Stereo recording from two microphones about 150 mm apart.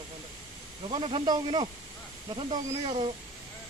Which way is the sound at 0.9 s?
35° right (ahead or behind).